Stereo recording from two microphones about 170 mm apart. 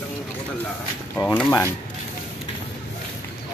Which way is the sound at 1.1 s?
10° left (ahead or behind).